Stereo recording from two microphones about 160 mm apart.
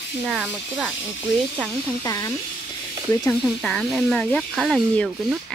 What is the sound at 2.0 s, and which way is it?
Speech, 20° left (ahead or behind).